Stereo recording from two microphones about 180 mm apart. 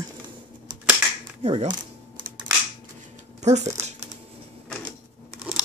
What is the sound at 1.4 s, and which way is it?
Speech, 35° right (ahead or behind).